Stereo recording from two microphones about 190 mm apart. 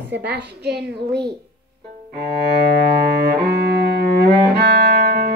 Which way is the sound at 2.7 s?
55° right (ahead or behind).